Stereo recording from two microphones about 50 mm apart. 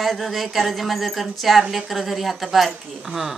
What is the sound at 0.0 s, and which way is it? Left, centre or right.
Speech, centre.